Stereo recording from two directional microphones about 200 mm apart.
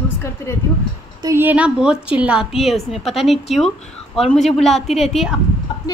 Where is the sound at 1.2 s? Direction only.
10° right (ahead or behind).